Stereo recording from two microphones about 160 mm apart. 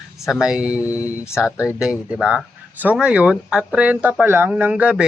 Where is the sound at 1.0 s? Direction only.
15° left (ahead or behind).